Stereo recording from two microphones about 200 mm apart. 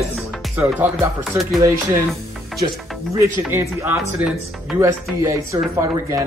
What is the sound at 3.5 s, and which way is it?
A man's voice, 10° right (ahead or behind).